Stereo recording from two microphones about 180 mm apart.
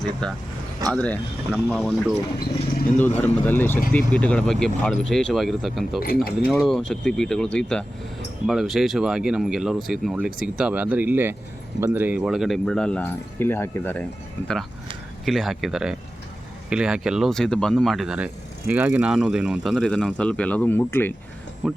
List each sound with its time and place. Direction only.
0.2 s speech: 5° left (ahead or behind)
3.0 s speech: 10° left (ahead or behind)
6.0 s speech: 55° left (ahead or behind)
6.5 s speech: centre (ahead or behind)
21.6 s speech: centre (ahead or behind)